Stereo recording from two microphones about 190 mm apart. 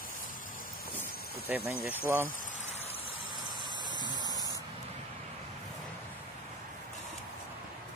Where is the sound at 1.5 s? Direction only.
10° right (ahead or behind).